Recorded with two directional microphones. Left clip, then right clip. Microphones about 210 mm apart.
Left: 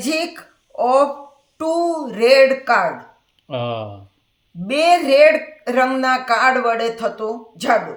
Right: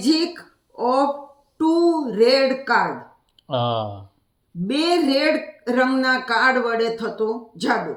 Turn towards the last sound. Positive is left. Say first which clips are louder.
# left 2 dB
turn(degrees=40)  # may be behind; listen again after turning